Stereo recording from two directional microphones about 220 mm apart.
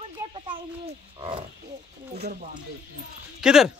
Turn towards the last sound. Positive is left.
turn(degrees=-5)  # may be behind; listen again after turning